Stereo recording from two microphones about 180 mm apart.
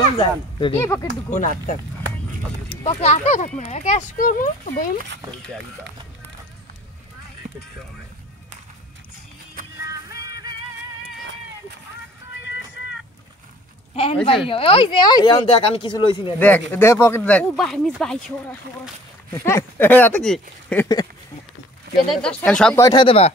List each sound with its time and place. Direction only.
0.2 s speech: 25° left (ahead or behind)
0.7 s speech: 15° left (ahead or behind)
1.3 s speech: 45° left (ahead or behind)
2.8 s speech: 35° left (ahead or behind)
10.0 s music: 20° right (ahead or behind)
14.2 s speech: 30° left (ahead or behind)
16.3 s speech: 10° left (ahead or behind)
22.1 s speech: 5° left (ahead or behind)
22.8 s speech: 25° left (ahead or behind)